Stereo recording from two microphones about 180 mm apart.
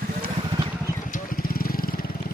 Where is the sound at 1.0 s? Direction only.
50° left (ahead or behind).